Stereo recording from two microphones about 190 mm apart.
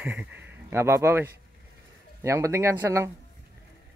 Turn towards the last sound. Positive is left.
turn(degrees=-15)  # may be behind; listen again after turning